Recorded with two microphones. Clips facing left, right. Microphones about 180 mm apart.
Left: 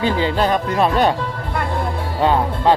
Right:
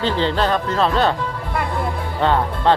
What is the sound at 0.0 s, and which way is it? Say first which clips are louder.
Speech: left 1 dB; 10° left (ahead or behind).